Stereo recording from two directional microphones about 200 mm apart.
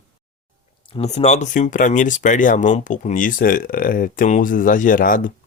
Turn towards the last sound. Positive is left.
turn(degrees=40)  # may be behind; listen again after turning